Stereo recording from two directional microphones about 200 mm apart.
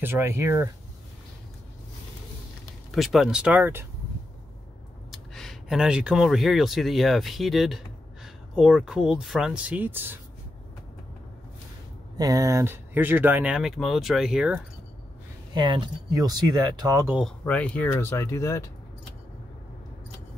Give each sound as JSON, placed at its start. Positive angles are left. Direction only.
{"t": 0.0, "sound": "speech", "side_deg": -10}
{"t": 2.9, "sound": "speech", "side_deg": 0}
{"t": 5.1, "sound": "speech", "side_deg": 0}
{"t": 12.2, "sound": "speech", "side_deg": -15}
{"t": 15.5, "sound": "speech", "side_deg": -25}
{"t": 17.2, "sound": "speech", "side_deg": 5}